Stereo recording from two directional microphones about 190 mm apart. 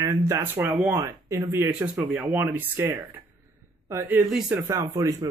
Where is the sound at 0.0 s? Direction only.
15° right (ahead or behind).